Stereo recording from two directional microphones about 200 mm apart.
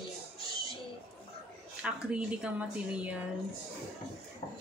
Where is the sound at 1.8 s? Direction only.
5° right (ahead or behind).